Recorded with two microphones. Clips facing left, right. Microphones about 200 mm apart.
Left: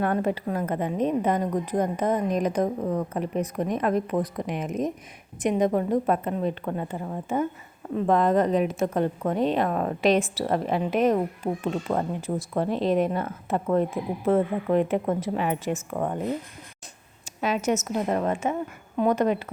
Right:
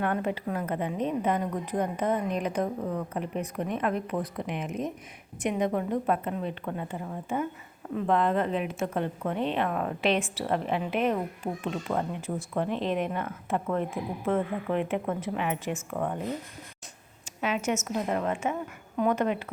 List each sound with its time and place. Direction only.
0.0 s a woman's voice: 40° left (ahead or behind)
17.4 s a woman's voice: 40° left (ahead or behind)